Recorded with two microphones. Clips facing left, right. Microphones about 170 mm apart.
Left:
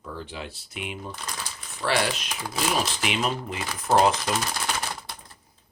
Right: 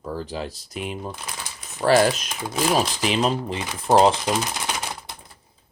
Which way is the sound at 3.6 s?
20° right (ahead or behind).